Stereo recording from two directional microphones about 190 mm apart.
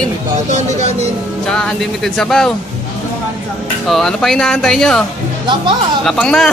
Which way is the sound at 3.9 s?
5° left (ahead or behind).